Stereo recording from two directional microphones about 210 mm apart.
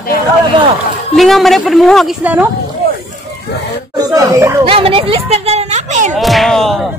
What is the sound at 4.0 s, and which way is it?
Speech, 15° right (ahead or behind).